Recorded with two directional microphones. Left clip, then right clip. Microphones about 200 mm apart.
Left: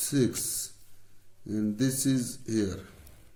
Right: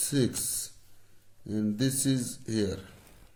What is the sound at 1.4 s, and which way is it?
Speech, 40° right (ahead or behind).